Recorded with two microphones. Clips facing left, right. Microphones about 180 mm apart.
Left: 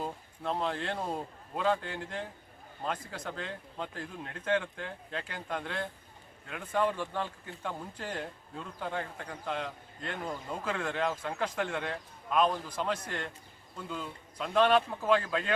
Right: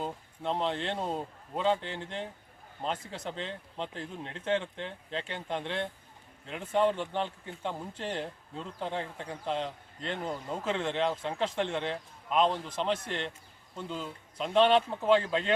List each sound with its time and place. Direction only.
0.0 s a man's voice: 25° right (ahead or behind)